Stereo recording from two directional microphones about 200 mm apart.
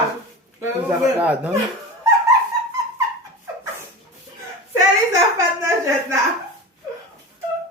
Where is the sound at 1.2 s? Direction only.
10° right (ahead or behind).